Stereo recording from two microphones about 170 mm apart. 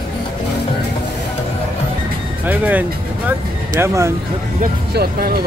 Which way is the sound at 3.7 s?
15° right (ahead or behind).